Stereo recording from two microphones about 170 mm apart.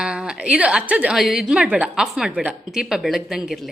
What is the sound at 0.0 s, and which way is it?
A woman's voice, 5° right (ahead or behind).